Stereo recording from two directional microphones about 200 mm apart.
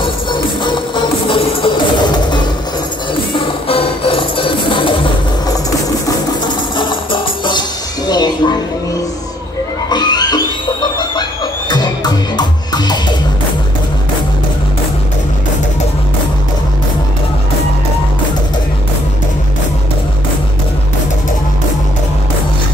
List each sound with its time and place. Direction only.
0.0 s music: 25° left (ahead or behind)
6.8 s music: 25° left (ahead or behind)
9.8 s music: 20° left (ahead or behind)